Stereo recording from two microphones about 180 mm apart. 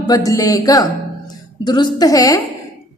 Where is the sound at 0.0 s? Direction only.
20° left (ahead or behind).